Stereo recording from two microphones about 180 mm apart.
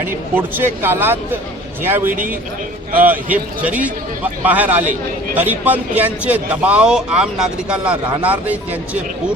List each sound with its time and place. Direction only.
0.0 s a man's voice: 10° right (ahead or behind)